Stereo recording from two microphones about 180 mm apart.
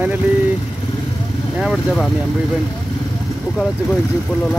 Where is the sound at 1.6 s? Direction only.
Centre (ahead or behind).